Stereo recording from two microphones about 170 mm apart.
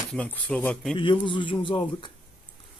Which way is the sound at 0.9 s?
30° left (ahead or behind).